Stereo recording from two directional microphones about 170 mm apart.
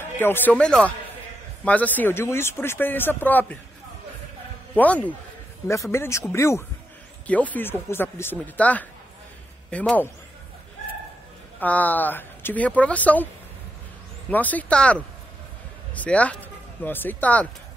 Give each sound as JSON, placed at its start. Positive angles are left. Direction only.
{"t": 0.0, "sound": "speech", "side_deg": 10}
{"t": 4.7, "sound": "speech", "side_deg": 10}
{"t": 11.6, "sound": "speech", "side_deg": 10}
{"t": 14.3, "sound": "speech", "side_deg": 10}